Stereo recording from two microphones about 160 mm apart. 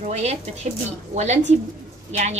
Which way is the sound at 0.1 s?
40° right (ahead or behind).